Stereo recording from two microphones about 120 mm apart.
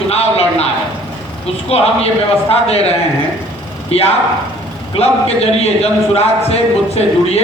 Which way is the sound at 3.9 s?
55° left (ahead or behind).